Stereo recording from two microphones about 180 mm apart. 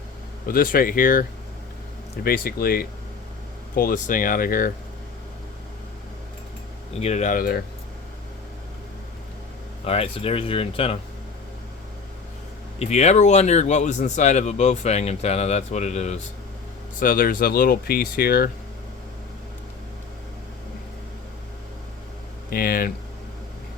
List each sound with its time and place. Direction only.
0.4 s speech: 50° left (ahead or behind)
6.9 s speech: 35° left (ahead or behind); by 7.6 s 55° left (ahead or behind)
9.8 s speech: 30° left (ahead or behind)
12.8 s speech: 40° left (ahead or behind)
17.0 s speech: 50° left (ahead or behind)
22.4 s a sound: 55° left (ahead or behind)